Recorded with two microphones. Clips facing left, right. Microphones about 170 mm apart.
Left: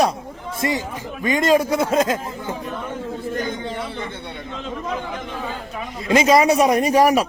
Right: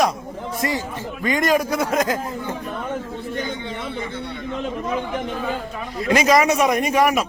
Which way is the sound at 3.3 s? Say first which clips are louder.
Even; 45° left (ahead or behind).